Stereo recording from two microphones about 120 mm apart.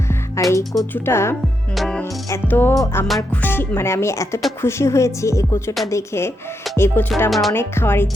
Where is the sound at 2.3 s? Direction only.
20° left (ahead or behind).